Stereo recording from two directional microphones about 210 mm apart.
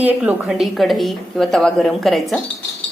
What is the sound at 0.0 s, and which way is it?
A woman's voice, 5° right (ahead or behind).